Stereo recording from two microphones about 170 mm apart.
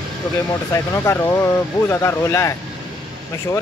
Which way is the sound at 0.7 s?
15° left (ahead or behind).